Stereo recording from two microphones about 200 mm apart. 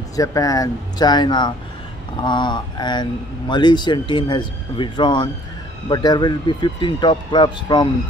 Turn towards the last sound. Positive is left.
turn(degrees=20)  # may be behind; listen again after turning